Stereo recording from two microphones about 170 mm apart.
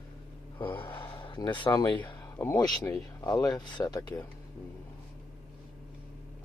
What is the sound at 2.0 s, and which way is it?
Speech, 10° left (ahead or behind).